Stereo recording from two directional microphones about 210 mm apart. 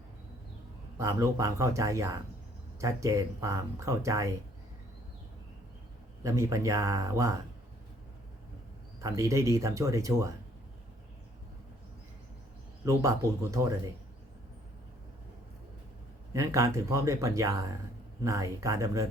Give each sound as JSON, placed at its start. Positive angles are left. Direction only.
{"t": 0.9, "sound": "speech", "side_deg": -15}
{"t": 6.2, "sound": "speech", "side_deg": -15}
{"t": 9.0, "sound": "speech", "side_deg": -15}
{"t": 12.8, "sound": "speech", "side_deg": -15}
{"t": 16.3, "sound": "speech", "side_deg": -15}